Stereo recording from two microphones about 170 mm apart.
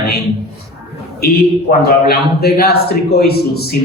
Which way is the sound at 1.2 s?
65° left (ahead or behind).